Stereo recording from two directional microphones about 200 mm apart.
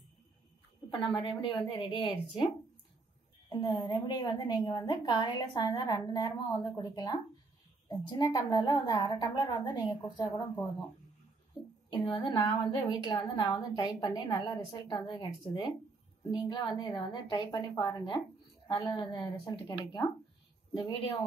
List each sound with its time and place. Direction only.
1.2 s a woman's voice: 25° left (ahead or behind)
3.4 s a woman's voice: 20° left (ahead or behind)
11.6 s a sound: 25° left (ahead or behind)
11.9 s a woman's voice: 20° left (ahead or behind)